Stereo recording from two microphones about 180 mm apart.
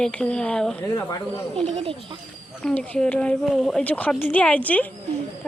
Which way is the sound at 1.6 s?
30° right (ahead or behind).